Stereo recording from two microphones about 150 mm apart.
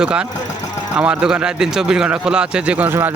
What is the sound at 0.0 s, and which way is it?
A man's voice, 5° right (ahead or behind).